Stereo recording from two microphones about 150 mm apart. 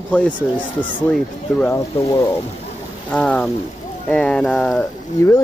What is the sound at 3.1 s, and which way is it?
Speech, 10° left (ahead or behind).